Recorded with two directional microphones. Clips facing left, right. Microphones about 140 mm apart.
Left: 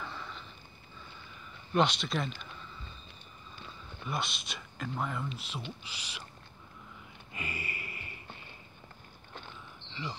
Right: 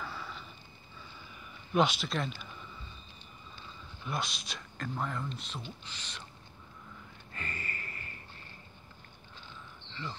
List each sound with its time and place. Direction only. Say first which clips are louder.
0.0 s sniff: right 1 dB; 5° right (ahead or behind)
1.7 s speech: even; centre (ahead or behind)
4.0 s speech: left 1 dB; centre (ahead or behind)
7.3 s a sound: left 2 dB; 10° left (ahead or behind)